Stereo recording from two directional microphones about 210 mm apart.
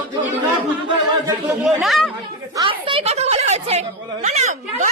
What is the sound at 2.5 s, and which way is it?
A woman's voice, 25° right (ahead or behind).